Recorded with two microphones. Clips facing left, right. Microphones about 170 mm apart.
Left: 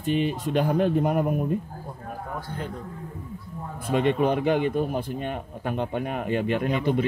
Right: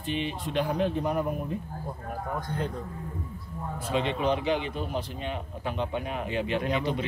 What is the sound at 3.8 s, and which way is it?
Speech, 50° left (ahead or behind).